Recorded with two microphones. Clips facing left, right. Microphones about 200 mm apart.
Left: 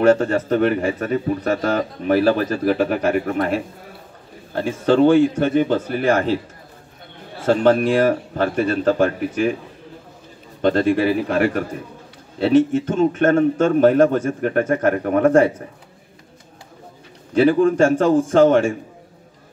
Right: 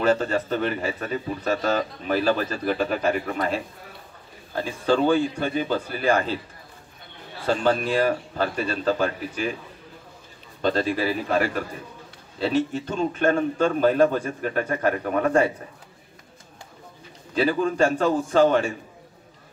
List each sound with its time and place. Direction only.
0.0 s a man's voice: 70° left (ahead or behind)
7.4 s a man's voice: 65° left (ahead or behind)
10.6 s a man's voice: 65° left (ahead or behind)
15.0 s a man's voice: 55° left (ahead or behind)
17.3 s a man's voice: 70° left (ahead or behind)